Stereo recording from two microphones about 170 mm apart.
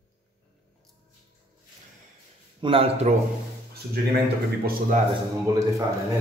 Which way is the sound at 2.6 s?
35° right (ahead or behind).